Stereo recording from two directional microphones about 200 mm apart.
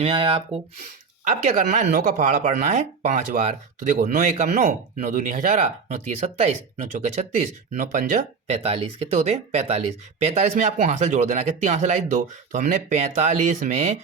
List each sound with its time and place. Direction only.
0.0 s speech: 25° right (ahead or behind)
1.2 s speech: 40° right (ahead or behind)
7.7 s speech: 40° right (ahead or behind)